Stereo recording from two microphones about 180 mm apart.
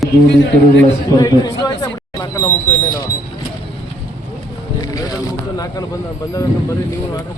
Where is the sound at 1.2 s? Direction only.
20° left (ahead or behind).